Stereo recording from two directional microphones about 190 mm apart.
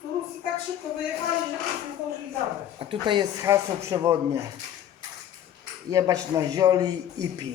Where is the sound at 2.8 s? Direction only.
25° right (ahead or behind).